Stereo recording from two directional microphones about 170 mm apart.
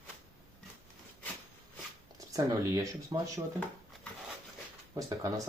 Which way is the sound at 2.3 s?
20° right (ahead or behind).